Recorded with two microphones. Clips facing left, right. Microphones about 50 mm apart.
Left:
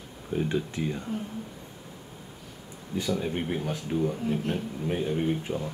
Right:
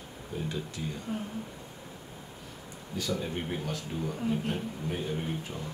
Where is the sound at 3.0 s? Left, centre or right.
Centre.